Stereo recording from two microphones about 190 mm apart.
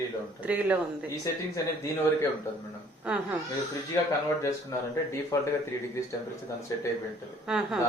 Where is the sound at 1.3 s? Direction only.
15° left (ahead or behind).